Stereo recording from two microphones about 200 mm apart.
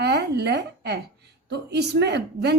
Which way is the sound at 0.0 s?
55° right (ahead or behind).